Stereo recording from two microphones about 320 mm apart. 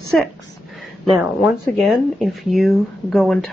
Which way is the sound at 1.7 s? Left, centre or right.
Centre.